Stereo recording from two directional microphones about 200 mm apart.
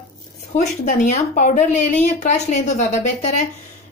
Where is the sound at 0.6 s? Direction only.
40° left (ahead or behind).